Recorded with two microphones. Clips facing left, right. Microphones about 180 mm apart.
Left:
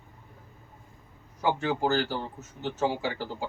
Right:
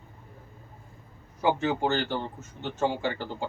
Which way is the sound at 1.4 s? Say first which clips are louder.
Right 1 dB; centre (ahead or behind).